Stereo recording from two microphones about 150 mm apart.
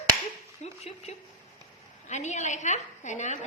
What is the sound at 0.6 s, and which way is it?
A woman's voice, 45° left (ahead or behind).